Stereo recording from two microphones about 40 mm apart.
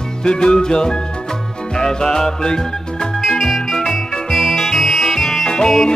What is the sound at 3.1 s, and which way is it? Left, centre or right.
Music, centre.